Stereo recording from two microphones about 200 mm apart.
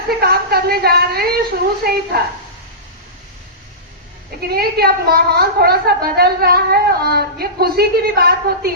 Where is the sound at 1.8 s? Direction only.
50° right (ahead or behind).